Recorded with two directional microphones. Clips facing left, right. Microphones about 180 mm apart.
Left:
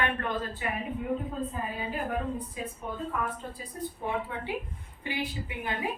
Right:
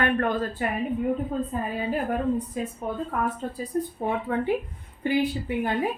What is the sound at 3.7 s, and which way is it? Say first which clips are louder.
Speech: right 9 dB; 55° right (ahead or behind).